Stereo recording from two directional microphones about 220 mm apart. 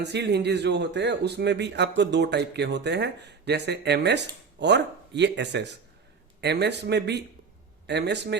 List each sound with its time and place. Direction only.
0.0 s speech: 50° right (ahead or behind)